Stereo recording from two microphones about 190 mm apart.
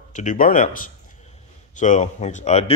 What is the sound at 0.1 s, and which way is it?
A man's voice, 40° left (ahead or behind).